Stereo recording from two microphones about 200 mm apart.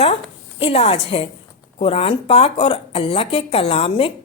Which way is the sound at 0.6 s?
30° left (ahead or behind).